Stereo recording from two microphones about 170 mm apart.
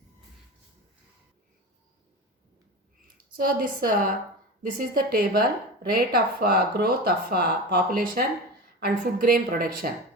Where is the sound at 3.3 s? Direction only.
55° right (ahead or behind).